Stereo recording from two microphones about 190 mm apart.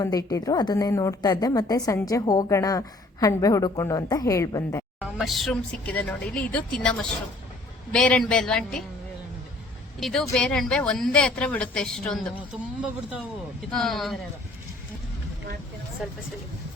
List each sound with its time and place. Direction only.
0.0 s a woman's voice: 20° left (ahead or behind)
5.1 s a woman's voice: centre (ahead or behind)
7.9 s a woman's voice: 5° left (ahead or behind)
10.0 s a woman's voice: centre (ahead or behind)
13.7 s a woman's voice: centre (ahead or behind)